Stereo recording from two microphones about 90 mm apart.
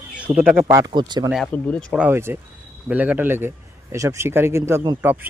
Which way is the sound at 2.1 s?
25° right (ahead or behind).